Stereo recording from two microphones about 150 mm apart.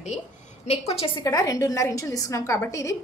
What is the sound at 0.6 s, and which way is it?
Speech, 40° left (ahead or behind).